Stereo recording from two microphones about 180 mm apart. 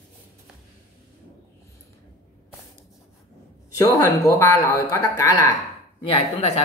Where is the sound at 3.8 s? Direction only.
20° left (ahead or behind).